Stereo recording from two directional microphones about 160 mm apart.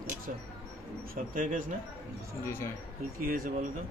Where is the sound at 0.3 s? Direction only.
60° right (ahead or behind).